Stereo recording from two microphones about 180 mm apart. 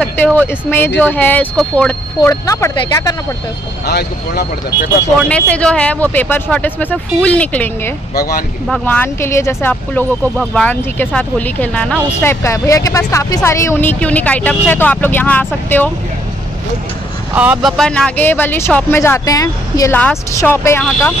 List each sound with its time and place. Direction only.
0.0 s speech: 10° left (ahead or behind)
2.1 s speech: 20° left (ahead or behind)
3.8 s speech: 60° left (ahead or behind)
5.3 s speech: 5° left (ahead or behind)
8.1 s speech: 55° left (ahead or behind)
8.8 s speech: 10° left (ahead or behind)
17.3 s speech: 5° right (ahead or behind); by 20.8 s 15° left (ahead or behind)